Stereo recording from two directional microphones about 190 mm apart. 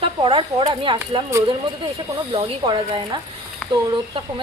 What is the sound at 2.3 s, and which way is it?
Speech, 25° right (ahead or behind).